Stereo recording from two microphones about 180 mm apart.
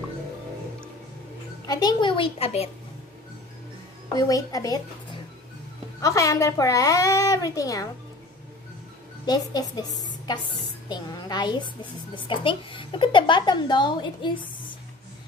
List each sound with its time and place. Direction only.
1.7 s a woman's voice: 20° left (ahead or behind)
4.1 s a woman's voice: 20° left (ahead or behind)
9.2 s a woman's voice: 20° left (ahead or behind)